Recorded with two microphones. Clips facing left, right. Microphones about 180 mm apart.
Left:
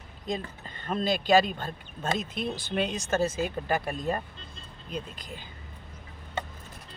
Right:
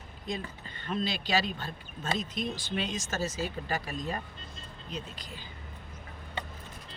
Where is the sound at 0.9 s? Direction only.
45° left (ahead or behind).